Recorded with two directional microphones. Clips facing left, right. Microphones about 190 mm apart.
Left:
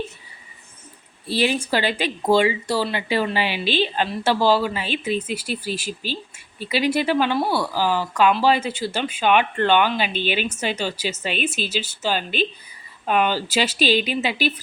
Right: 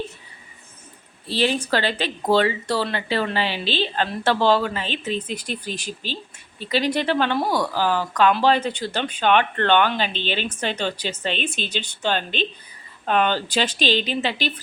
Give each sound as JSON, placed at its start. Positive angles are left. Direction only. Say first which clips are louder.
{"t": 1.3, "sound": "speech", "louder": "even", "side_deg": 10}